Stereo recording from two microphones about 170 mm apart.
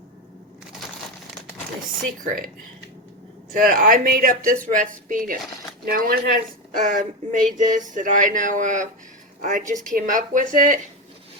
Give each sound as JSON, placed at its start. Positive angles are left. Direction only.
{"t": 2.0, "sound": "speech", "side_deg": -50}
{"t": 3.5, "sound": "speech", "side_deg": -50}